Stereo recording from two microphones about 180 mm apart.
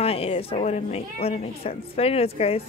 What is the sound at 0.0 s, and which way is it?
A woman's voice, 35° left (ahead or behind).